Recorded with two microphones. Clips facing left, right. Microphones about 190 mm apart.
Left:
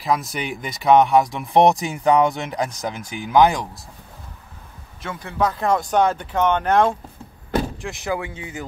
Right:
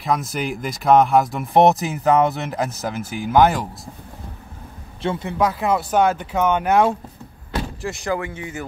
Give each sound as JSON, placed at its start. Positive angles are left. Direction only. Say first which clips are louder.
{"t": 0.0, "sound": "speech", "louder": "even", "side_deg": 0}
{"t": 5.0, "sound": "a man's voice", "louder": "right 8 dB", "side_deg": -30}
{"t": 5.4, "sound": "speech", "louder": "even", "side_deg": -5}
{"t": 7.8, "sound": "speech", "louder": "right 2 dB", "side_deg": 5}
{"t": 8.2, "sound": "speech", "louder": "right 2 dB", "side_deg": 15}